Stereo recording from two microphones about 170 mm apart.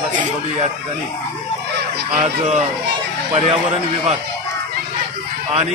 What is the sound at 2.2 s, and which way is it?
Speech, 40° right (ahead or behind).